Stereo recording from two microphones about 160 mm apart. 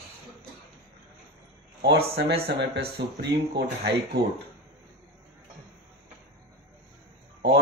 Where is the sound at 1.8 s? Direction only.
80° right.